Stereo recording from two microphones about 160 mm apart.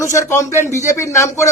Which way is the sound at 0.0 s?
15° left (ahead or behind).